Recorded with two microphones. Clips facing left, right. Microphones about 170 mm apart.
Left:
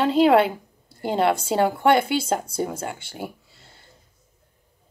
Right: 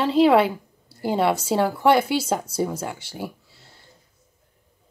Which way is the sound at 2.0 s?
55° left (ahead or behind).